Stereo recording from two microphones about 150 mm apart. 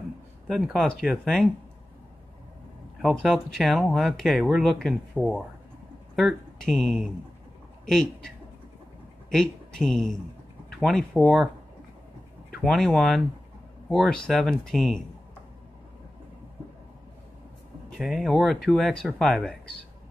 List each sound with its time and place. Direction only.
0.5 s speech: centre (ahead or behind)
3.0 s a man's voice: centre (ahead or behind)
9.3 s speech: 5° left (ahead or behind)
12.5 s speech: centre (ahead or behind)
17.8 s speech: centre (ahead or behind)